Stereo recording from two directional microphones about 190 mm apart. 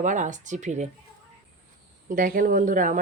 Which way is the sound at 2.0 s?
45° right (ahead or behind).